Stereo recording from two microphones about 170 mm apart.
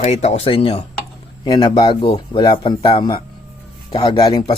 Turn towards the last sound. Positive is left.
turn(degrees=30)  # may be behind; listen again after turning